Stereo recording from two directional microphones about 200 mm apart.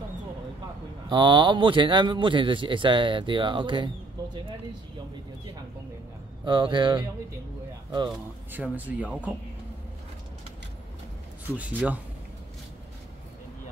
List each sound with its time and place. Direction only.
1.0 s a man's voice: 20° right (ahead or behind)
6.4 s a man's voice: 25° right (ahead or behind)
8.1 s speech: 10° right (ahead or behind)
11.5 s speech: 5° right (ahead or behind)